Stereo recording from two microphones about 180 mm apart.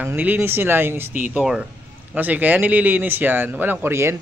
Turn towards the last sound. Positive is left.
turn(degrees=-15)  # may be behind; listen again after turning